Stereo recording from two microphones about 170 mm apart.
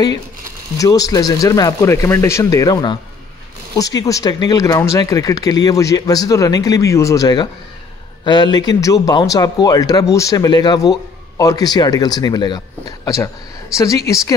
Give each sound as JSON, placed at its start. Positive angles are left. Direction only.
{"t": 0.7, "sound": "speech", "side_deg": 20}